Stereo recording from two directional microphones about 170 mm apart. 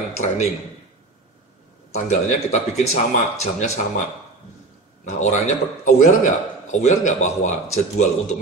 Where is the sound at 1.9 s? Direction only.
45° left (ahead or behind).